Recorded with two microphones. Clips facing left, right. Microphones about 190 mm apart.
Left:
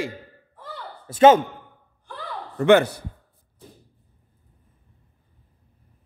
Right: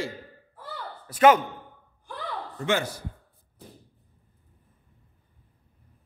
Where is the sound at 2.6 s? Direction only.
65° left (ahead or behind).